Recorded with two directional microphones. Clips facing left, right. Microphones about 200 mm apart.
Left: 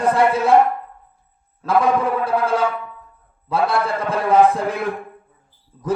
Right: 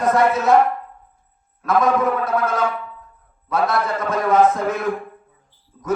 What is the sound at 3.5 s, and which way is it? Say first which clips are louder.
A man's voice: left 1 dB; 30° left (ahead or behind).